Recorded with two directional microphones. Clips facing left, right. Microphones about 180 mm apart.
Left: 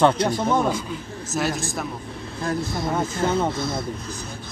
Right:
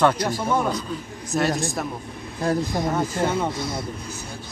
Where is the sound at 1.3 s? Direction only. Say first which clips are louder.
Right 3 dB; centre (ahead or behind).